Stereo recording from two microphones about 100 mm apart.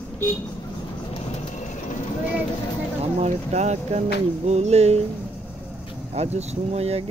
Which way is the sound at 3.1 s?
90° right.